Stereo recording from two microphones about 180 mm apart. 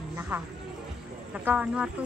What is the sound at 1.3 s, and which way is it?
Speech, 5° right (ahead or behind).